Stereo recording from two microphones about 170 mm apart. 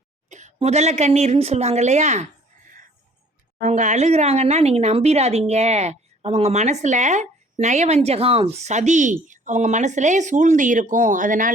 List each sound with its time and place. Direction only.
0.3 s speech: 45° right (ahead or behind)
3.6 s a woman's voice: 45° right (ahead or behind)